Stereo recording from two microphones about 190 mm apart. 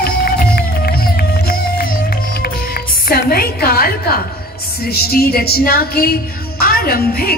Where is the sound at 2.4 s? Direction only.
50° left (ahead or behind).